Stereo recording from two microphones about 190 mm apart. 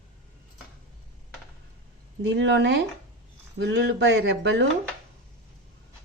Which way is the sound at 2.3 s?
70° right (ahead or behind).